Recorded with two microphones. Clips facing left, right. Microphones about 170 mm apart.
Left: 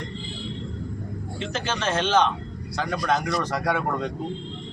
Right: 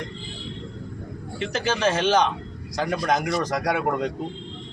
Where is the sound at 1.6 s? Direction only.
10° right (ahead or behind).